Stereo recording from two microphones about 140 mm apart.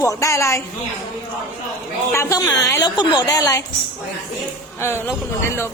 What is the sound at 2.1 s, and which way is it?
A woman's voice, 20° left (ahead or behind).